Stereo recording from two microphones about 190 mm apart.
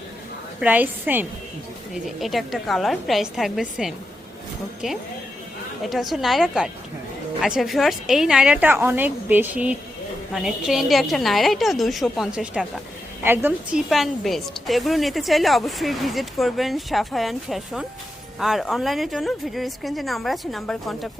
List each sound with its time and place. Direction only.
0.6 s a woman's voice: 10° right (ahead or behind)
5.8 s a woman's voice: centre (ahead or behind)